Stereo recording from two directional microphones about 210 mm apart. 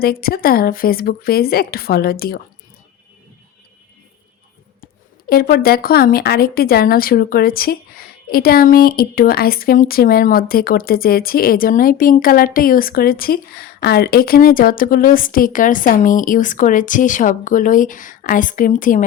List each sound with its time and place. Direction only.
0.0 s a woman's voice: 45° left (ahead or behind)
4.8 s a woman's voice: 45° left (ahead or behind)